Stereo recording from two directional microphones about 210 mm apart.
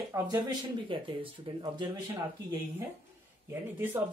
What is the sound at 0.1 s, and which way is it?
Speech, 15° right (ahead or behind).